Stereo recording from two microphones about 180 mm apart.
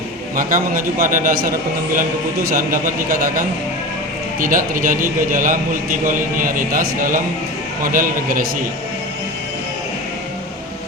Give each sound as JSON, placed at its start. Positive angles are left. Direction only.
{"t": 0.3, "sound": "a man's voice", "side_deg": -50}